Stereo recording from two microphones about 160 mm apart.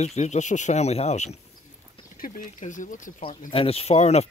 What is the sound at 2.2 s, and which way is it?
Speech, 60° left (ahead or behind).